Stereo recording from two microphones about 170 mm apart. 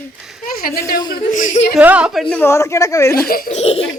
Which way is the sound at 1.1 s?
50° left (ahead or behind).